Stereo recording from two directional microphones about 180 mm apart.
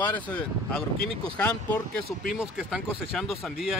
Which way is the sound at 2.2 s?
5° right (ahead or behind).